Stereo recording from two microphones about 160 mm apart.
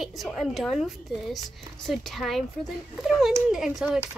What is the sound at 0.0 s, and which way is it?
Speech, centre (ahead or behind).